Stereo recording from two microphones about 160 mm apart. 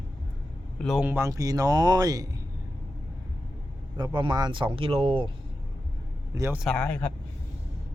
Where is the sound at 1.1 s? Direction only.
15° right (ahead or behind).